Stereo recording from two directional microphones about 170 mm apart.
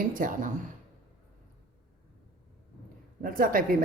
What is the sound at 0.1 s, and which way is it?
Speech, 50° right (ahead or behind).